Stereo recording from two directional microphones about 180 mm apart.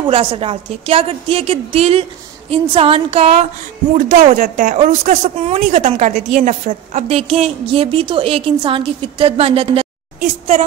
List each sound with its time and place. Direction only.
0.0 s speech: 30° right (ahead or behind)
3.9 s speech: 45° right (ahead or behind)